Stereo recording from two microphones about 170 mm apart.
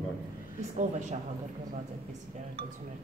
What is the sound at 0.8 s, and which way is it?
Speech, 45° right (ahead or behind).